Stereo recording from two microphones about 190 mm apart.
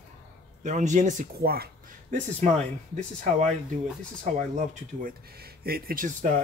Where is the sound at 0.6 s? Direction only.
40° right (ahead or behind).